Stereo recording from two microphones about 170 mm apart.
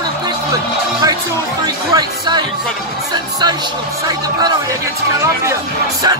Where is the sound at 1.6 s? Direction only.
20° right (ahead or behind).